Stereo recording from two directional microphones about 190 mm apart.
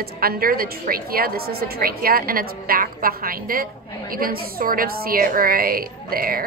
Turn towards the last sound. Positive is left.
turn(degrees=-50)  # may be behind; listen again after turning